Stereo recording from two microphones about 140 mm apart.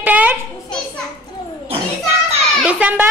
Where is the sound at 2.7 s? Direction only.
10° right (ahead or behind).